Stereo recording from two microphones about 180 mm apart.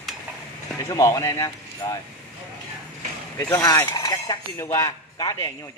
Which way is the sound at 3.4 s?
20° left (ahead or behind).